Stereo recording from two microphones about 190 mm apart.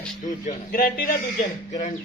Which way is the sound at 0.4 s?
50° left (ahead or behind).